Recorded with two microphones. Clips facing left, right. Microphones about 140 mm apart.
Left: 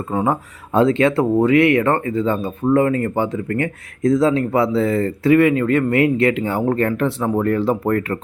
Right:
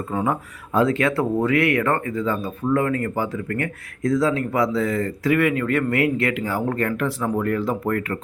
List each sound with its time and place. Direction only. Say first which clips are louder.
0.1 s speech: left 4 dB; 25° left (ahead or behind)